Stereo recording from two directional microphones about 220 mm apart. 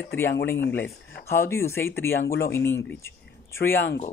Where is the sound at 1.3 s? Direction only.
10° left (ahead or behind).